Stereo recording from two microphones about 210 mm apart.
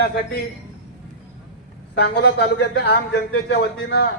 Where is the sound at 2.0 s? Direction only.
55° left (ahead or behind).